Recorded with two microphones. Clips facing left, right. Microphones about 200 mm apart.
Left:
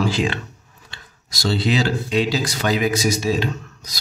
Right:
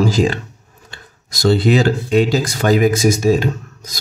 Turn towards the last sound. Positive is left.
turn(degrees=-45)  # may be behind; listen again after turning